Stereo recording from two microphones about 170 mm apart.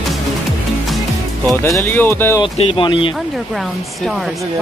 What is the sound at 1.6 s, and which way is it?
Speech, 15° left (ahead or behind).